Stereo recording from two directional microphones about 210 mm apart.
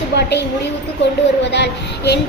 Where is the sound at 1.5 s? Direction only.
55° left (ahead or behind).